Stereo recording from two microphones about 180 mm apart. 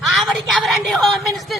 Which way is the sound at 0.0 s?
Centre (ahead or behind).